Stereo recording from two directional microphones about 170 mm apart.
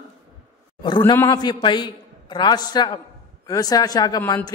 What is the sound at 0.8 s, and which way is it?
A man's voice, 25° left (ahead or behind).